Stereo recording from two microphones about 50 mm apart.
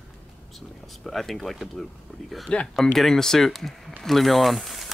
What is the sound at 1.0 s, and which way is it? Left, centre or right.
Speech, centre.